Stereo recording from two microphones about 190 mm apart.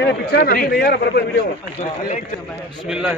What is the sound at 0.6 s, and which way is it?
Speech, 55° left (ahead or behind).